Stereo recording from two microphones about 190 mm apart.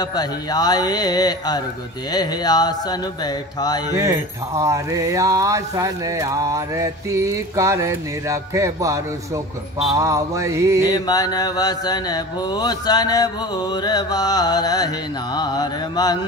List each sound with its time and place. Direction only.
0.0 s mantra: 20° left (ahead or behind)
3.9 s mantra: 15° right (ahead or behind)
10.9 s mantra: 20° left (ahead or behind)